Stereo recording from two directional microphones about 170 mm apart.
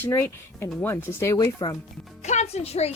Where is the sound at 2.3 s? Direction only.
40° left (ahead or behind).